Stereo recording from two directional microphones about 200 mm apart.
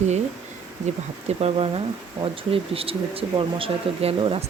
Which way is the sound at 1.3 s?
30° right (ahead or behind).